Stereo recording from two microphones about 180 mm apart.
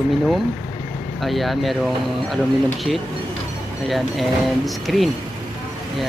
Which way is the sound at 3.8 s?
Centre (ahead or behind).